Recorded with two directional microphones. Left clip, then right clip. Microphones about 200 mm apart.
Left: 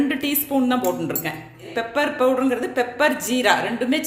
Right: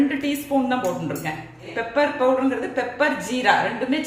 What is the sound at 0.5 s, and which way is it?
Speech, 55° left (ahead or behind).